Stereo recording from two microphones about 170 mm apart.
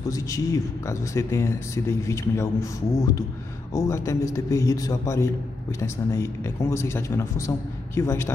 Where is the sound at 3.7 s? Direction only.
15° left (ahead or behind).